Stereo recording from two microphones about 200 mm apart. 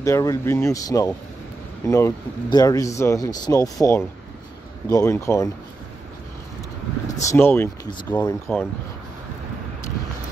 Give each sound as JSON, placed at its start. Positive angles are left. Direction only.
{"t": 0.0, "sound": "speech", "side_deg": 15}
{"t": 7.1, "sound": "speech", "side_deg": 15}